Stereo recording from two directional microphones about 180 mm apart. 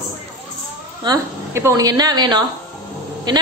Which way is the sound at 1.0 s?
20° right (ahead or behind).